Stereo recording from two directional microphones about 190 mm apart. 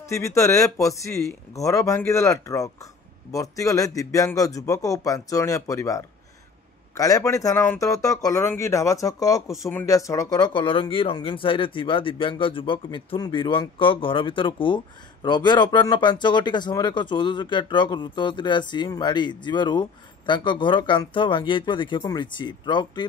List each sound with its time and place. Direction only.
0.0 s speech: 15° left (ahead or behind)